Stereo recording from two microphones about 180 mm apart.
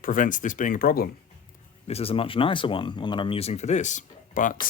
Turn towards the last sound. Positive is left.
turn(degrees=45)  # may be behind; listen again after turning